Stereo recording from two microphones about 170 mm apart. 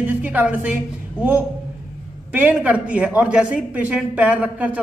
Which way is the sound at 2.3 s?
10° right (ahead or behind).